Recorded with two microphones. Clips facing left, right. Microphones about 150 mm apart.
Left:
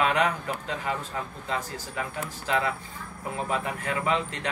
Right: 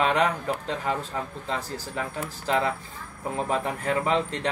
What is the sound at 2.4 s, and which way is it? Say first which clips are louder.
Speech: right 2 dB; 35° right (ahead or behind).